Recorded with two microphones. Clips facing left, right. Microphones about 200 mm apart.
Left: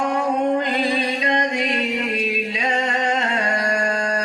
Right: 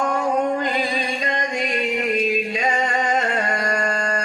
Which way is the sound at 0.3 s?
50° right (ahead or behind).